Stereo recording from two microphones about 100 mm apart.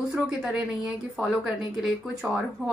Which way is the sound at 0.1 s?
5° right (ahead or behind).